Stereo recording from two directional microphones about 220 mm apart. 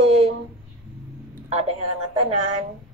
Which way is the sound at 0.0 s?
30° right (ahead or behind).